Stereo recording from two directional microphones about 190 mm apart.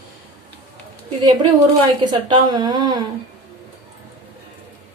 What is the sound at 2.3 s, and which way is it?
Speech, 25° right (ahead or behind).